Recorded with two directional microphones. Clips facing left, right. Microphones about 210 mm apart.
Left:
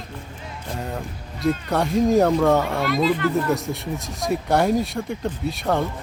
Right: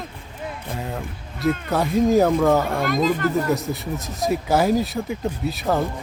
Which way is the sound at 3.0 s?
45° right (ahead or behind).